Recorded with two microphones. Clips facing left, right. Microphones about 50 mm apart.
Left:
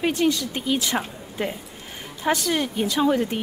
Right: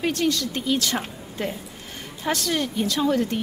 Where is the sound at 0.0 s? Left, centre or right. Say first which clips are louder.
Left 2 dB; centre.